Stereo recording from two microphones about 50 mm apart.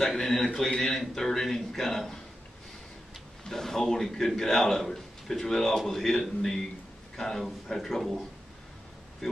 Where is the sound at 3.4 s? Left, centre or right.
Centre.